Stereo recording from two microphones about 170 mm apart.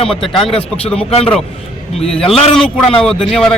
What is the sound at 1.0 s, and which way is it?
Speech, 35° left (ahead or behind).